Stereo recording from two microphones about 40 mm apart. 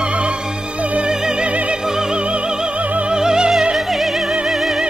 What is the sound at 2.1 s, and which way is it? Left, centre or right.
Music, right.